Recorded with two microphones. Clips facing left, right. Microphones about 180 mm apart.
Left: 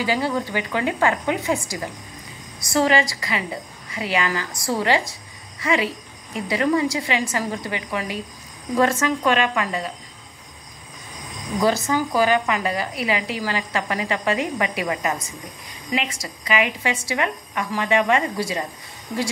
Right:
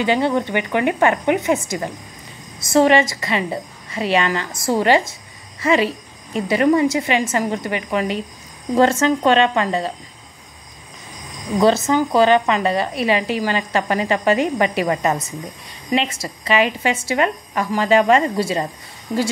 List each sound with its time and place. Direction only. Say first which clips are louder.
0.0 s a woman's voice: right 5 dB; 25° right (ahead or behind)
11.6 s a woman's voice: right 5 dB; 25° right (ahead or behind)